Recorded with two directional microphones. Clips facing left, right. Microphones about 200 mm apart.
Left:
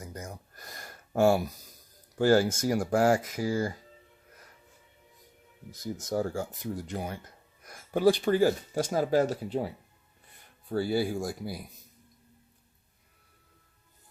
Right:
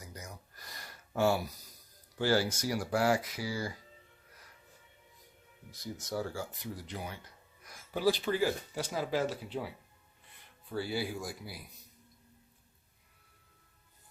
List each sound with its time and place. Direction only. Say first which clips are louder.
0.0 s a sound: left 7 dB; 50° left (ahead or behind)
2.1 s speech: left 7 dB; 45° left (ahead or behind)
5.8 s speech: left 6 dB; 45° left (ahead or behind)